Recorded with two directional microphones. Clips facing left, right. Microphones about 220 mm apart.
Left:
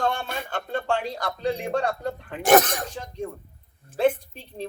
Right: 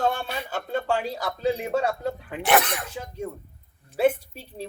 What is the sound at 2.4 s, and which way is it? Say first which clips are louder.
Speech: left 4 dB; 45° left (ahead or behind).